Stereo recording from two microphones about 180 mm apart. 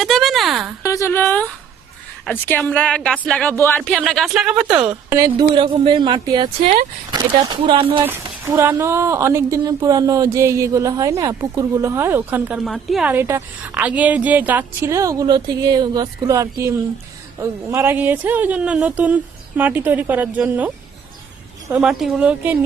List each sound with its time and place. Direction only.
0.0 s a sound: centre (ahead or behind)
0.8 s a woman's voice: 15° left (ahead or behind); by 4.6 s 5° right (ahead or behind)
4.9 s speech: 15° right (ahead or behind); by 8.0 s 30° right (ahead or behind)
8.0 s speech: 15° right (ahead or behind)